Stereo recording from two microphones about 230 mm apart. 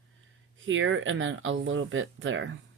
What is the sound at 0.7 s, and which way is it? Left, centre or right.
Speech, right.